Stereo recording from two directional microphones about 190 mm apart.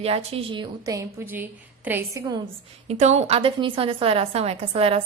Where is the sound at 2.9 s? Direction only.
35° right (ahead or behind).